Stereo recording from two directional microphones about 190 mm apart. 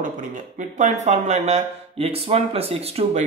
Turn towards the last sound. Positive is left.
turn(degrees=-35)  # may be behind; listen again after turning